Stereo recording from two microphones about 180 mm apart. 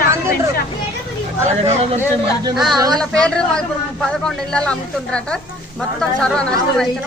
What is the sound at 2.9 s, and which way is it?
A woman's voice, 5° left (ahead or behind).